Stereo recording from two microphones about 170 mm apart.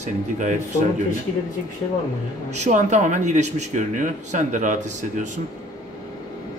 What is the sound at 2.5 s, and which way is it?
Speech, 45° right (ahead or behind).